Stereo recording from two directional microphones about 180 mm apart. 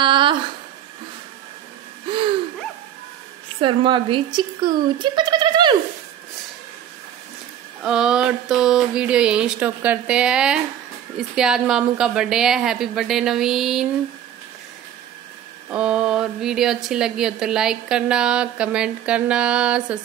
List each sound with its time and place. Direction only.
0.0 s a sound: 25° right (ahead or behind)
3.6 s speech: 25° right (ahead or behind)
7.8 s speech: 5° right (ahead or behind)
15.7 s speech: 5° right (ahead or behind)